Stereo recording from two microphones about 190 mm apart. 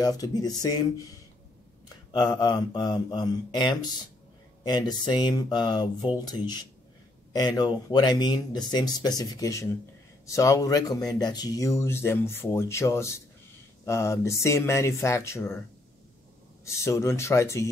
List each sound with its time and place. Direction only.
0.0 s speech: 20° left (ahead or behind)
2.1 s speech: 25° left (ahead or behind)
16.6 s speech: 15° left (ahead or behind)